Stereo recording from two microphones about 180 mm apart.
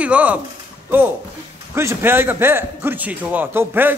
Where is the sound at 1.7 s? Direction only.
15° right (ahead or behind).